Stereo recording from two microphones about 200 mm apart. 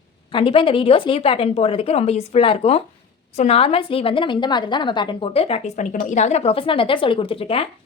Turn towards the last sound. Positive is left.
turn(degrees=30)  # may be behind; listen again after turning